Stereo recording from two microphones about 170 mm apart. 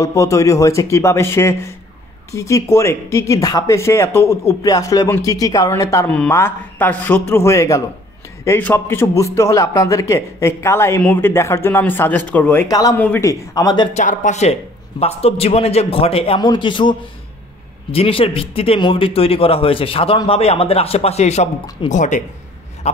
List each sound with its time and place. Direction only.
0.0 s a man's voice: 20° left (ahead or behind)
13.9 s a man's voice: 45° left (ahead or behind); by 16.9 s 30° left (ahead or behind)
17.9 s a man's voice: 35° left (ahead or behind)